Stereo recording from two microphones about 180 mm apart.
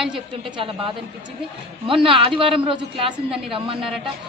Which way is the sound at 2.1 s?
30° right (ahead or behind).